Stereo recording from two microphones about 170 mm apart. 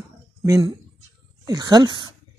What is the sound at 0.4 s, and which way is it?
Speech, 20° right (ahead or behind).